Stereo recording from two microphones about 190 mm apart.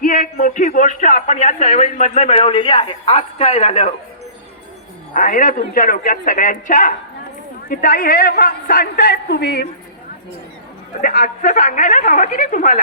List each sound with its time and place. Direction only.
0.0 s speech: 45° left (ahead or behind)
5.1 s a man's voice: 45° left (ahead or behind); by 9.6 s 60° left (ahead or behind)
11.0 s a man's voice: 50° left (ahead or behind)